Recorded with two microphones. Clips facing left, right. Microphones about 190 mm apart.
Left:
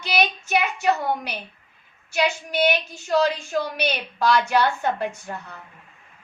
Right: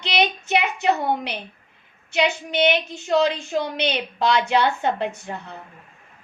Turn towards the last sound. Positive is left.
turn(degrees=-25)  # may be behind; listen again after turning